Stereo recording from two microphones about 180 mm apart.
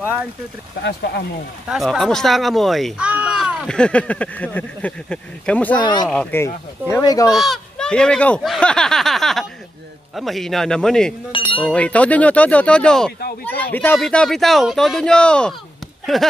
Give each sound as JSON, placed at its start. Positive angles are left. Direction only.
{"t": 0.0, "sound": "speech", "side_deg": -10}
{"t": 0.8, "sound": "speech", "side_deg": 65}
{"t": 1.7, "sound": "speech", "side_deg": 0}
{"t": 5.8, "sound": "speech", "side_deg": 25}
{"t": 6.0, "sound": "speech", "side_deg": 10}
{"t": 6.9, "sound": "speech", "side_deg": 20}
{"t": 7.3, "sound": "speech", "side_deg": 0}
{"t": 11.3, "sound": "speech", "side_deg": 30}
{"t": 11.6, "sound": "speech", "side_deg": 5}